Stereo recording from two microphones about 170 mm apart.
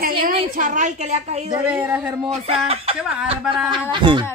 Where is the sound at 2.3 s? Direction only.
40° right (ahead or behind).